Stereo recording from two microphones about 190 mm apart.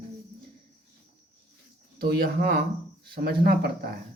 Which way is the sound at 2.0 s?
50° right (ahead or behind).